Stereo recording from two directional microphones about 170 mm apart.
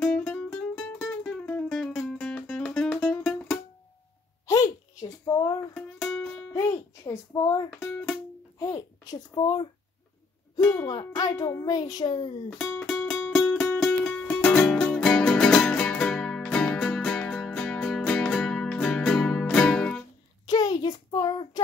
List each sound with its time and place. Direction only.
0.0 s music: 5° left (ahead or behind)
4.5 s a sound: 20° left (ahead or behind)
5.8 s music: 5° left (ahead or behind)
6.5 s a child's voice: 20° left (ahead or behind)
10.7 s a child's voice: 20° left (ahead or behind)
12.4 s music: 5° left (ahead or behind)
20.4 s child singing: 20° left (ahead or behind)